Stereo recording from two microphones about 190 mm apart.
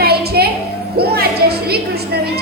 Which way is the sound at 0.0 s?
55° right (ahead or behind).